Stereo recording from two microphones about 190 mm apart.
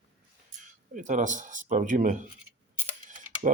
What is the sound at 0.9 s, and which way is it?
Speech, 40° right (ahead or behind).